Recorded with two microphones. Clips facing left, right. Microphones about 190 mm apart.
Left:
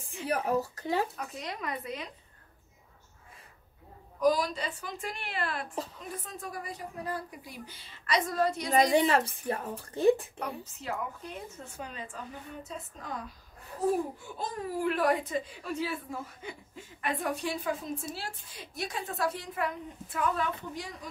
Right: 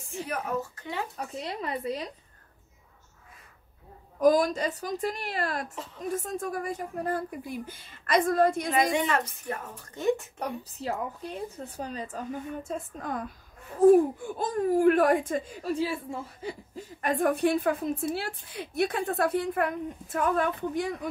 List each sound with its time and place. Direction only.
0.3 s a woman's voice: 35° left (ahead or behind)
1.1 s a woman's voice: 30° right (ahead or behind)
4.2 s a woman's voice: 50° right (ahead or behind)
8.7 s a woman's voice: 35° left (ahead or behind)
10.4 s a woman's voice: 35° right (ahead or behind)
15.7 s a woman's voice: 30° right (ahead or behind); by 21.1 s 55° right (ahead or behind)